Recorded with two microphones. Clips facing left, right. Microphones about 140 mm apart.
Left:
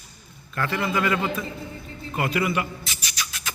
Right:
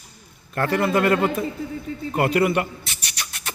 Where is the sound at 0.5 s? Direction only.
55° right (ahead or behind).